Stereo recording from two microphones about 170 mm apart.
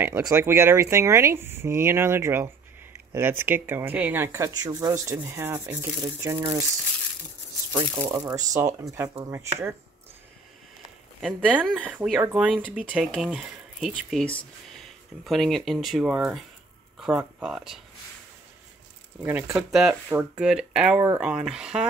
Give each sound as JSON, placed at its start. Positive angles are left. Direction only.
{"t": 0.0, "sound": "speech", "side_deg": -10}
{"t": 7.7, "sound": "speech", "side_deg": -20}
{"t": 11.1, "sound": "speech", "side_deg": -5}
{"t": 19.2, "sound": "speech", "side_deg": -10}